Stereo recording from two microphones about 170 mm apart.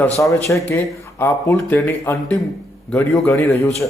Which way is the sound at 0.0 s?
15° left (ahead or behind).